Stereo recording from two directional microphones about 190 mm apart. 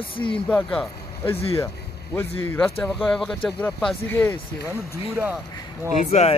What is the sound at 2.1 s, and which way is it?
Speech, 10° left (ahead or behind).